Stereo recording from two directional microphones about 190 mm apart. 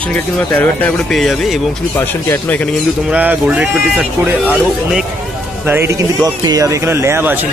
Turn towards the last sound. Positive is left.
turn(degrees=-10)  # may be behind; listen again after turning